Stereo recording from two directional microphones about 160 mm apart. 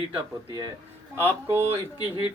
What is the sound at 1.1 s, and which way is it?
Speech, 15° right (ahead or behind).